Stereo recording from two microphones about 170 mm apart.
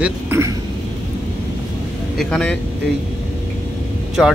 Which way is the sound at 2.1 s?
5° left (ahead or behind).